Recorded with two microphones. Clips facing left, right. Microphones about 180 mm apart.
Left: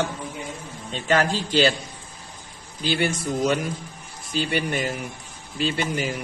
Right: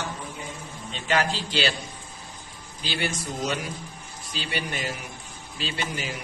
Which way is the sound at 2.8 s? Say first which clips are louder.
Left 6 dB; 50° left (ahead or behind).